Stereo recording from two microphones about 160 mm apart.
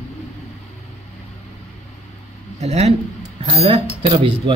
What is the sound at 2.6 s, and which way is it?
A man's voice, 40° right (ahead or behind).